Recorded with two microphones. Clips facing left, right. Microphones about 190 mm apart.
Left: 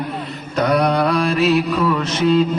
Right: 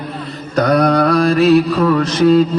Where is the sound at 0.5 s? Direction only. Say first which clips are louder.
Right 4 dB; 35° right (ahead or behind).